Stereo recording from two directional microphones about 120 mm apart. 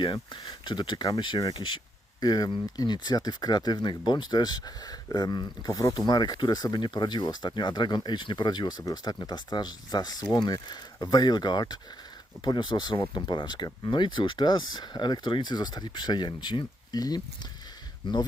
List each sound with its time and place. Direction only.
0.0 s speech: 40° left (ahead or behind)